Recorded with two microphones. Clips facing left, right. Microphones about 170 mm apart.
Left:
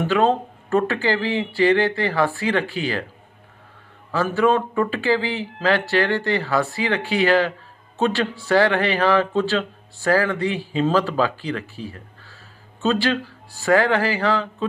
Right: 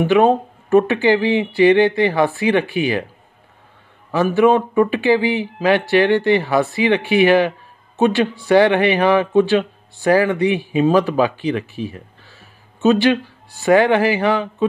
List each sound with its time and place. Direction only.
0.0 s speech: 15° right (ahead or behind)
4.1 s speech: 15° right (ahead or behind)